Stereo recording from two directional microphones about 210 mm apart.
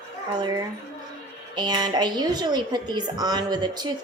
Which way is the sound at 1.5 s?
20° right (ahead or behind).